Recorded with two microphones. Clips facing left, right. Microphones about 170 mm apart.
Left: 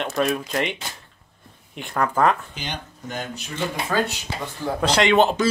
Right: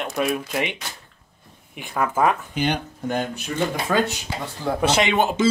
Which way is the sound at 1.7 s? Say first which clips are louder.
Even; 5° right (ahead or behind).